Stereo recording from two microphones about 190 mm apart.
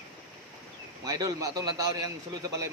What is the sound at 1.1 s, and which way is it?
Speech, 20° right (ahead or behind).